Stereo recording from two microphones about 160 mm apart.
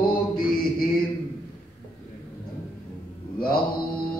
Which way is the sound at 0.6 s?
65° left (ahead or behind).